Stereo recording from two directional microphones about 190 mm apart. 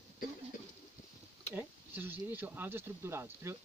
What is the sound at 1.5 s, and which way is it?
Speech, 10° right (ahead or behind).